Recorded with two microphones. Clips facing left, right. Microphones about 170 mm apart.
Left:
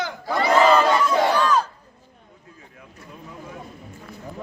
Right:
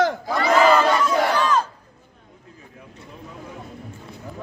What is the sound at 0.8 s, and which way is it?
Crowd, centre (ahead or behind).